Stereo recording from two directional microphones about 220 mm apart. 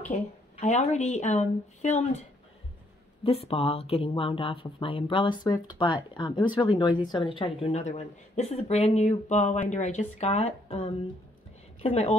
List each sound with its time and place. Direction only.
0.1 s speech: 30° left (ahead or behind)
3.3 s speech: 25° left (ahead or behind)